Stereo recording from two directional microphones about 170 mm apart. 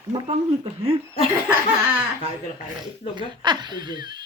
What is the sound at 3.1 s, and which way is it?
Speech, 25° right (ahead or behind).